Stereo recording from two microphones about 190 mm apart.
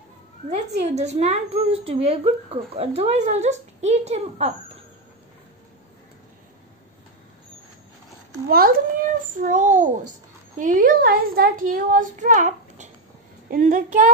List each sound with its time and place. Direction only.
0.7 s a woman's voice: 35° right (ahead or behind)
8.5 s a child's voice: 50° right (ahead or behind)